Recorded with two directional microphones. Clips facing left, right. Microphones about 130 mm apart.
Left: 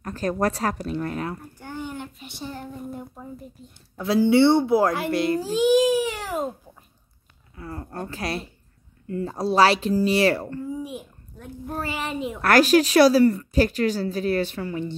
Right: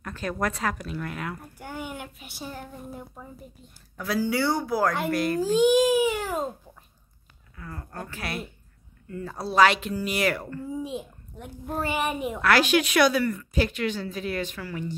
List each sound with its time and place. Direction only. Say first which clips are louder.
0.0 s a woman's voice: left 5 dB; 40° left (ahead or behind)
1.6 s child singing: left 2 dB; 10° right (ahead or behind)
3.9 s speech: left 8 dB; 25° left (ahead or behind)
5.4 s a child's voice: right 1 dB; 5° left (ahead or behind)
7.5 s a woman's voice: left 5 dB; 30° left (ahead or behind)
10.8 s a child's voice: right 1 dB; 20° right (ahead or behind)
12.4 s a woman's voice: left 5 dB; 45° left (ahead or behind); by 15.0 s 25° left (ahead or behind)